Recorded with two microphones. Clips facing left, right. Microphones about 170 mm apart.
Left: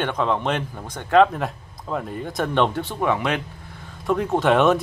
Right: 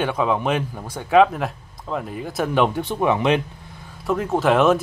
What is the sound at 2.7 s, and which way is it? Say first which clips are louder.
Speech: right 2 dB; 20° right (ahead or behind).